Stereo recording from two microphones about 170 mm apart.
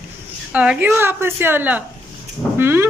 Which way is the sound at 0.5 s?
10° right (ahead or behind).